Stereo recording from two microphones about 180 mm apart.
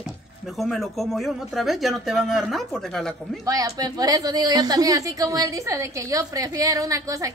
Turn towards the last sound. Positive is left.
turn(degrees=-20)  # may be behind; listen again after turning